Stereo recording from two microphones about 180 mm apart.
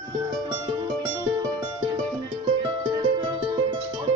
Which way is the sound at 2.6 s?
30° right (ahead or behind).